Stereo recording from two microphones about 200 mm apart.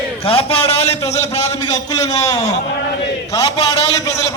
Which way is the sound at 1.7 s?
20° left (ahead or behind).